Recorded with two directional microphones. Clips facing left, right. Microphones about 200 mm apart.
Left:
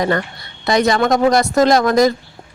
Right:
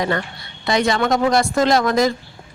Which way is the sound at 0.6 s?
45° left (ahead or behind).